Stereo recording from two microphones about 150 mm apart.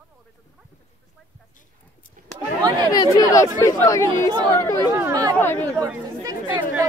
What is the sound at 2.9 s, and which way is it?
Chatter, 20° left (ahead or behind).